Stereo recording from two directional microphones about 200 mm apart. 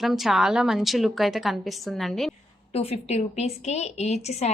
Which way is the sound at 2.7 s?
30° left (ahead or behind).